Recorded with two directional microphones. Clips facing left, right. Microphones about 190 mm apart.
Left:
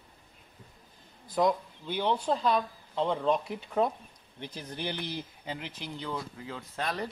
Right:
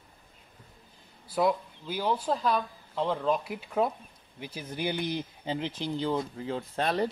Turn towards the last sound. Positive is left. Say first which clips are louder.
# right 6 dB
turn(degrees=-30)  # may be behind; listen again after turning